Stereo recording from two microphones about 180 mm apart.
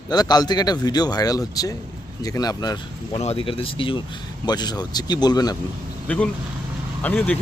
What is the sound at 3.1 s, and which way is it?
Speech, 35° left (ahead or behind).